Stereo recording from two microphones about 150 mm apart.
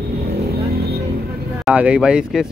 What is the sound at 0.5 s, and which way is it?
Vehicle, 90° right.